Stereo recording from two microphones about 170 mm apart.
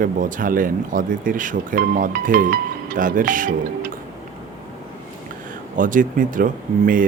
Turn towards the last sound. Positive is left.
turn(degrees=-55)  # may be behind; listen again after turning